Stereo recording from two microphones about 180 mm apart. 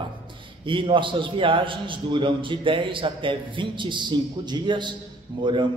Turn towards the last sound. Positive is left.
turn(degrees=-25)  # may be behind; listen again after turning